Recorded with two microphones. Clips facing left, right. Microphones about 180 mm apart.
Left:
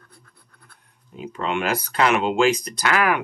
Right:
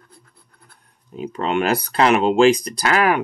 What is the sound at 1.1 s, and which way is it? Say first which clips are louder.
Speech: right 4 dB; 40° right (ahead or behind).